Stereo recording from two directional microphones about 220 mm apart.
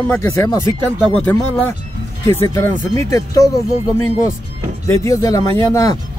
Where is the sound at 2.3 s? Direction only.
10° left (ahead or behind).